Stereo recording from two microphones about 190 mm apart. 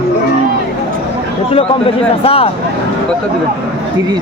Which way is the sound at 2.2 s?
30° left (ahead or behind).